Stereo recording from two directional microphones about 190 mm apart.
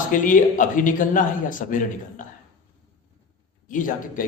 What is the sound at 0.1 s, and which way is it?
A man's voice, 45° left (ahead or behind).